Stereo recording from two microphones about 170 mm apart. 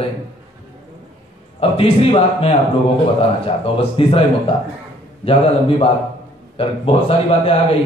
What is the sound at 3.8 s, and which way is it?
Speech, 35° left (ahead or behind).